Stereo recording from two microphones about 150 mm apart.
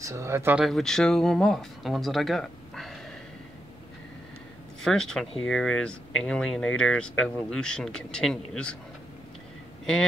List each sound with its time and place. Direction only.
0.0 s speech: 20° right (ahead or behind)
0.6 s speech: centre (ahead or behind)
4.8 s speech: 5° left (ahead or behind)